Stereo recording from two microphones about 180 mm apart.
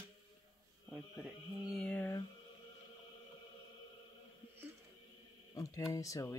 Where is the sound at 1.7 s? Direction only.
5° left (ahead or behind).